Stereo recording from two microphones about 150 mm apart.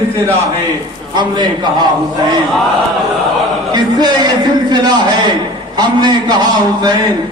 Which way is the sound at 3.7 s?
30° right (ahead or behind).